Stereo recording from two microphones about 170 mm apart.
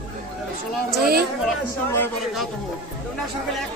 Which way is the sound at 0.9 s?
65° right (ahead or behind).